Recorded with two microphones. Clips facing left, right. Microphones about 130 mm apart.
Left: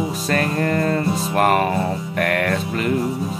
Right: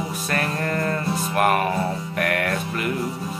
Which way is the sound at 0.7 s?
30° left (ahead or behind).